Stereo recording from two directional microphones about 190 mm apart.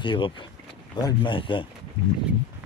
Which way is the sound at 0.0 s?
25° left (ahead or behind).